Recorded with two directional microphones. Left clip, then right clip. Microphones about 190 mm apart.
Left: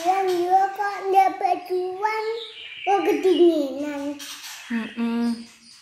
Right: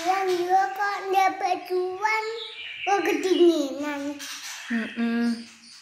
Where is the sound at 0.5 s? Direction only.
15° left (ahead or behind).